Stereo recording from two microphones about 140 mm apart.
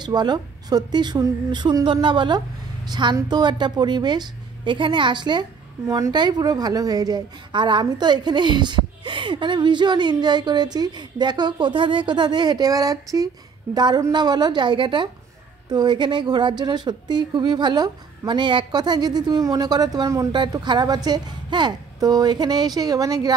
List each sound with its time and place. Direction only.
0.0 s a woman's voice: 30° right (ahead or behind)